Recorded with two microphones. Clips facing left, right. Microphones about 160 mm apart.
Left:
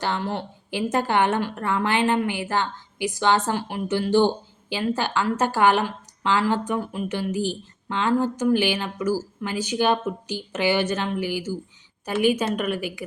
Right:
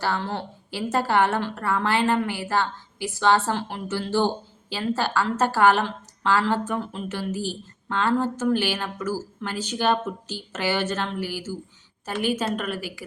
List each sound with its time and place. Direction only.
0.0 s a woman's voice: 20° left (ahead or behind)